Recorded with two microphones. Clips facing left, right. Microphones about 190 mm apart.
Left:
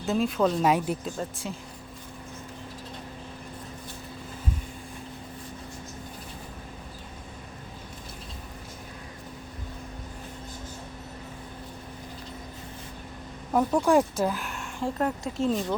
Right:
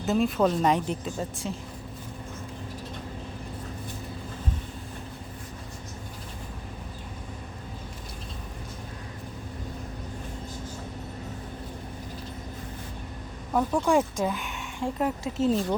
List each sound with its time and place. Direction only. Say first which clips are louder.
0.0 s speech: right 1 dB; centre (ahead or behind)
13.5 s speech: left 2 dB; 10° left (ahead or behind)